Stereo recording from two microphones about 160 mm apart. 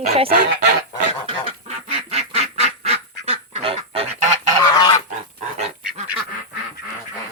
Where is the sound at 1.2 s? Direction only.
40° right (ahead or behind).